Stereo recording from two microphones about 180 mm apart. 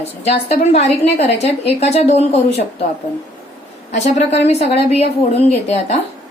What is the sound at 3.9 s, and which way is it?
A woman's voice, 40° left (ahead or behind).